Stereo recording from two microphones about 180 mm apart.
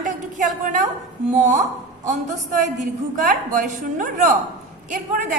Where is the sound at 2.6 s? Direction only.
45° right (ahead or behind).